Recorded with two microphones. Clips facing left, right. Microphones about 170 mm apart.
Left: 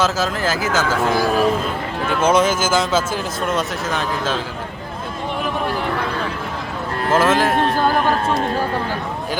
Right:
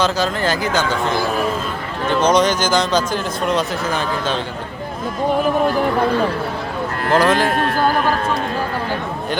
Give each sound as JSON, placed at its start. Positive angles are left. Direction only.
{"t": 0.0, "sound": "speech", "side_deg": 5}
{"t": 2.2, "sound": "speech", "side_deg": 5}
{"t": 7.1, "sound": "speech", "side_deg": 0}
{"t": 7.5, "sound": "speech", "side_deg": 25}